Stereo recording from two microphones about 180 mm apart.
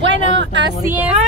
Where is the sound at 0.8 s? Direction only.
10° right (ahead or behind).